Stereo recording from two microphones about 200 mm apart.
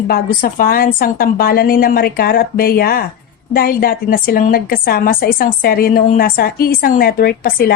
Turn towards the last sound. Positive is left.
turn(degrees=45)  # may be behind; listen again after turning